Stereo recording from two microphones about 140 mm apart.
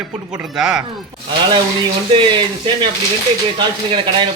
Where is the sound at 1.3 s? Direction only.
35° right (ahead or behind).